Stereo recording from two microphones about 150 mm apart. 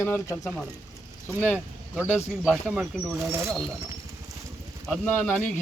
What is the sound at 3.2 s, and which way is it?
Speech, 20° right (ahead or behind).